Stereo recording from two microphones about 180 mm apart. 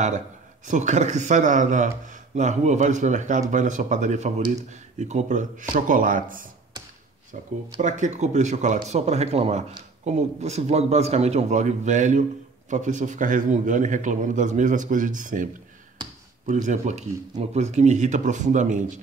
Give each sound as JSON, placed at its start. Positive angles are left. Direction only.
{"t": 0.7, "sound": "speech", "side_deg": -40}
{"t": 16.0, "sound": "a sound", "side_deg": -25}
{"t": 16.4, "sound": "speech", "side_deg": -45}